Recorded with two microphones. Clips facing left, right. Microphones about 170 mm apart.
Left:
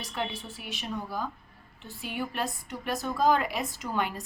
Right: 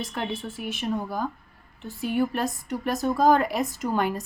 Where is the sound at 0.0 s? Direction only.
50° right (ahead or behind).